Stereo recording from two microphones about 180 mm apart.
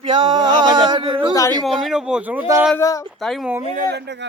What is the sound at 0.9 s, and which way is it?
Speech, 30° right (ahead or behind).